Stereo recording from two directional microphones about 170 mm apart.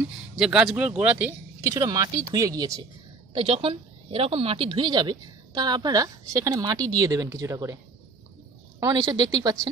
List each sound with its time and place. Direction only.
0.4 s a woman's voice: 5° right (ahead or behind); by 2.8 s 20° right (ahead or behind)
3.3 s a woman's voice: 35° right (ahead or behind)